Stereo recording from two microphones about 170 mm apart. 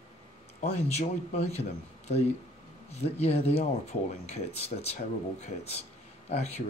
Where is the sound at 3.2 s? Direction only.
35° left (ahead or behind).